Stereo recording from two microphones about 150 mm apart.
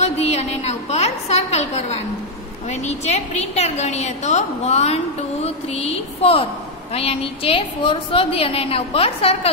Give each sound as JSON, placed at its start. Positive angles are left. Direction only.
{"t": 0.0, "sound": "a woman's voice", "side_deg": 45}